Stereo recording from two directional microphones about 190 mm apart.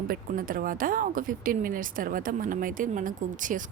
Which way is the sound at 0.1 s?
45° right (ahead or behind).